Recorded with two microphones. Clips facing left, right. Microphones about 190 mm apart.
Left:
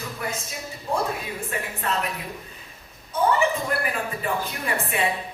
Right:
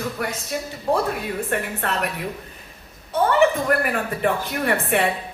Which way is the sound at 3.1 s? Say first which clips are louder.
Right 4 dB; 65° right (ahead or behind).